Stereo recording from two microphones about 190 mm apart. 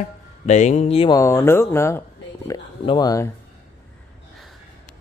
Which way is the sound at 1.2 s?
15° left (ahead or behind).